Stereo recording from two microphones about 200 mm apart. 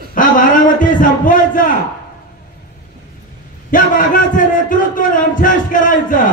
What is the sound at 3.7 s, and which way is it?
A man's voice, 40° left (ahead or behind).